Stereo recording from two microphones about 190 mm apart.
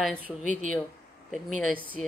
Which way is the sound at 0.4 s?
40° right (ahead or behind).